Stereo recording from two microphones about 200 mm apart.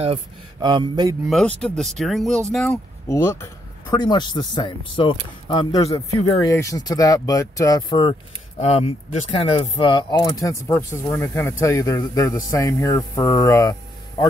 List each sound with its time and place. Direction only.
0.0 s speech: 25° right (ahead or behind)
1.3 s speech: centre (ahead or behind); by 8.2 s 20° left (ahead or behind)
8.5 s speech: 30° left (ahead or behind)